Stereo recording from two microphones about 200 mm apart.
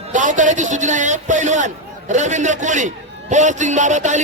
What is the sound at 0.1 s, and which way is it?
A man's voice, 40° right (ahead or behind).